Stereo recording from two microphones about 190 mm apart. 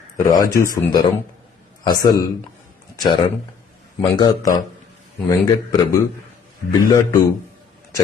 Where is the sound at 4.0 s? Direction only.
20° left (ahead or behind).